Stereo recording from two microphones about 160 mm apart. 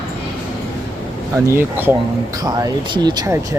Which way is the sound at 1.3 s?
15° right (ahead or behind).